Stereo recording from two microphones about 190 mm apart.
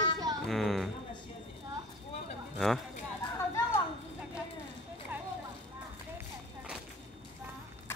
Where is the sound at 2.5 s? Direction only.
Centre (ahead or behind).